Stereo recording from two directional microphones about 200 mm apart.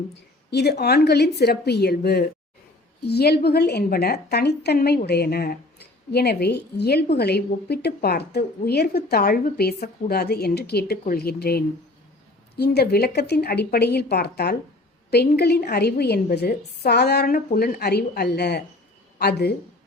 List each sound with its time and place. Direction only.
0.5 s a woman's voice: 55° left (ahead or behind)